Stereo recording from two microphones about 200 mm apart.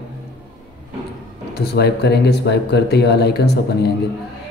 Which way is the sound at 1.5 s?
55° left (ahead or behind).